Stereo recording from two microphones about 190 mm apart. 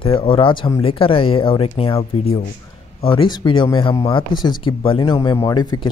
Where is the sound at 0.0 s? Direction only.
30° left (ahead or behind).